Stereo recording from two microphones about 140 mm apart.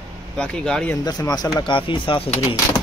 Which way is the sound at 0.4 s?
5° left (ahead or behind).